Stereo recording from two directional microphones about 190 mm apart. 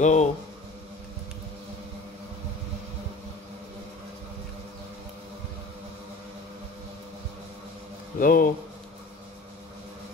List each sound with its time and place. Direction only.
0.0 s speech: 40° left (ahead or behind)
8.2 s speech: 50° left (ahead or behind)